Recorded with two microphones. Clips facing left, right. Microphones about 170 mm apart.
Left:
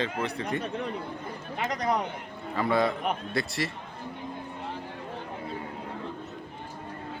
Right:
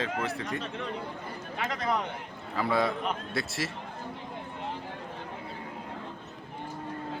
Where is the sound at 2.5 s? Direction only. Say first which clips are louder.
Left 2 dB; centre (ahead or behind).